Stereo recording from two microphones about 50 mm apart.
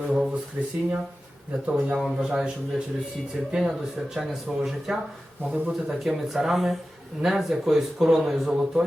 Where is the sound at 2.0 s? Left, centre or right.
Centre.